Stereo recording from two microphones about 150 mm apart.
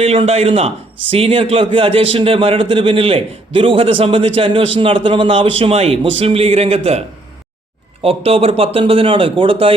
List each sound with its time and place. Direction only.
0.0 s a man's voice: 40° right (ahead or behind)
8.0 s a man's voice: 40° right (ahead or behind)